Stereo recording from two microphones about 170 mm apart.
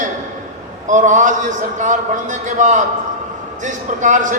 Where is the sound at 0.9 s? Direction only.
45° right (ahead or behind).